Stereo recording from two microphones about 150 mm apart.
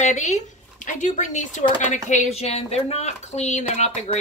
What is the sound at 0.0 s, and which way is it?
A woman's voice, 50° left (ahead or behind).